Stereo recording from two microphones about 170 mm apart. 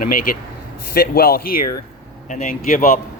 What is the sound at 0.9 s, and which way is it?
A man's voice, 60° left (ahead or behind).